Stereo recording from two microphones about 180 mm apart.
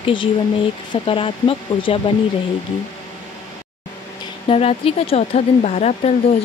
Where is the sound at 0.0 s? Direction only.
30° left (ahead or behind).